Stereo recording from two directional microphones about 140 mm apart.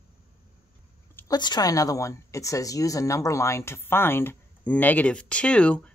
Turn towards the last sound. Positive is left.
turn(degrees=10)  # may be behind; listen again after turning